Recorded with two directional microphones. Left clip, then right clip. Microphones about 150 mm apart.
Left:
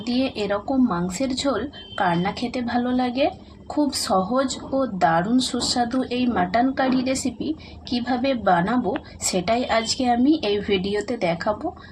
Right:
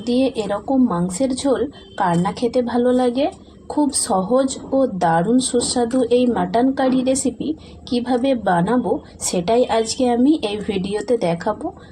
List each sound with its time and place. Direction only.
0.0 s a woman's voice: 20° right (ahead or behind)